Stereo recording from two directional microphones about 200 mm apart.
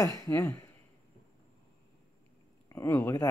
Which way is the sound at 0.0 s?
15° left (ahead or behind).